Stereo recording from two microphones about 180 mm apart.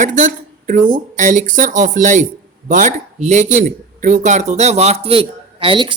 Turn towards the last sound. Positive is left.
turn(degrees=-30)  # may be behind; listen again after turning